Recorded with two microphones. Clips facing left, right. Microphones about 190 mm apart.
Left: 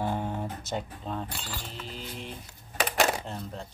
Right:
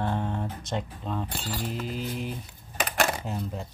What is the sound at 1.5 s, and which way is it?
Mantra, 15° right (ahead or behind).